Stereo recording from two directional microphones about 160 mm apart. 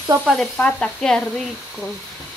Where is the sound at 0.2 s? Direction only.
Centre (ahead or behind).